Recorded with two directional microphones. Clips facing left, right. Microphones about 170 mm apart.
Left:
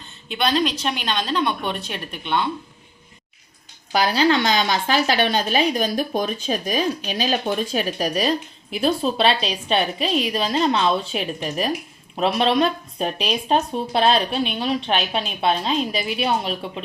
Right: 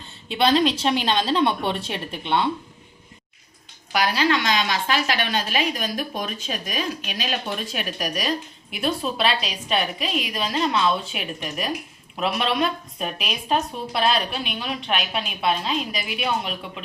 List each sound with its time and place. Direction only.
0.3 s a woman's voice: 30° right (ahead or behind)
3.9 s a woman's voice: 30° left (ahead or behind)